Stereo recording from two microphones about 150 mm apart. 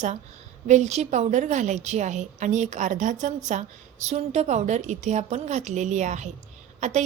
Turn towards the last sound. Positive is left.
turn(degrees=-50)  # may be behind; listen again after turning